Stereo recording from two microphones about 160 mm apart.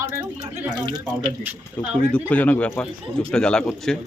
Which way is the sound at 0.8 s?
25° right (ahead or behind).